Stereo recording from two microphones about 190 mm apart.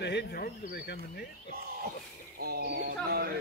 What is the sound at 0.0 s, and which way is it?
Speech, 60° left (ahead or behind).